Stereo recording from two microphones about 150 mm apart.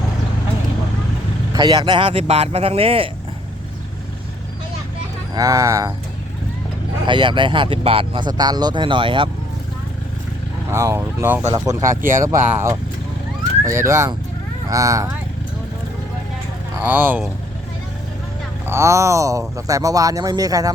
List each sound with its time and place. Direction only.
1.5 s speech: 25° right (ahead or behind)
5.3 s speech: 25° right (ahead or behind)
7.1 s speech: 30° right (ahead or behind)
10.7 s speech: 20° right (ahead or behind)
16.8 s speech: 15° right (ahead or behind)
18.6 s speech: 20° right (ahead or behind)